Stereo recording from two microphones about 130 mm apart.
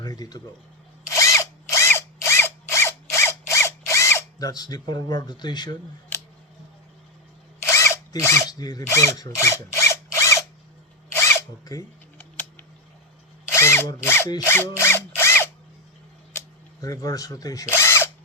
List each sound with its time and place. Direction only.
0.0 s speech: 30° left (ahead or behind)
1.0 s drill: 25° left (ahead or behind)
7.7 s drill: 20° left (ahead or behind)
8.4 s speech: 30° left (ahead or behind)
9.8 s drill: 25° left (ahead or behind)
11.1 s zipper: 20° left (ahead or behind)
13.5 s drill: 20° left (ahead or behind)
16.8 s speech: 25° left (ahead or behind)